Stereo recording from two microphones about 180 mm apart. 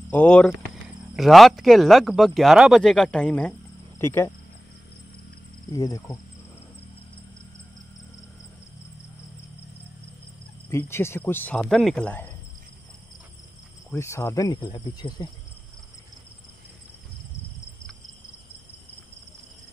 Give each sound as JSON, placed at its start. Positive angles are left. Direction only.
{"t": 0.1, "sound": "speech", "side_deg": 5}
{"t": 5.7, "sound": "speech", "side_deg": 20}
{"t": 10.7, "sound": "speech", "side_deg": 15}
{"t": 13.8, "sound": "speech", "side_deg": 15}